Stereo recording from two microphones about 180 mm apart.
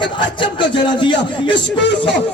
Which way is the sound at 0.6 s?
25° left (ahead or behind).